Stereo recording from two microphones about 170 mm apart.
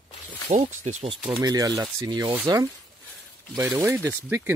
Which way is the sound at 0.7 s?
45° right (ahead or behind).